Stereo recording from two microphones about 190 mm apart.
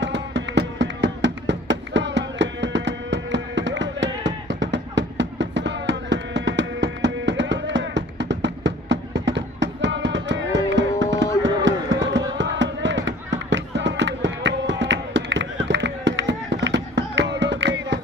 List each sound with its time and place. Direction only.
0.0 s music: 70° right (ahead or behind)